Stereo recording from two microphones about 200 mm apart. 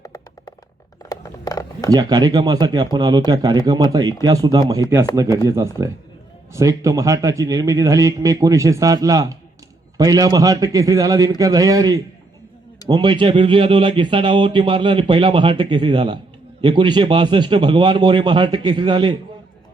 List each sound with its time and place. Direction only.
0.0 s music: 15° left (ahead or behind)
1.1 s a sound: 15° left (ahead or behind)
1.9 s a man's voice: 20° right (ahead or behind)